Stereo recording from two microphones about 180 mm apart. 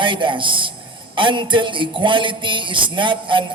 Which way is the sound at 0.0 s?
25° right (ahead or behind).